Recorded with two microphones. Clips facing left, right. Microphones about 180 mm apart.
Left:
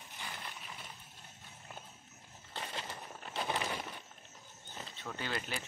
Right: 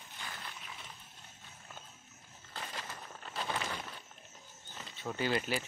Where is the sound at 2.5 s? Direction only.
25° left (ahead or behind).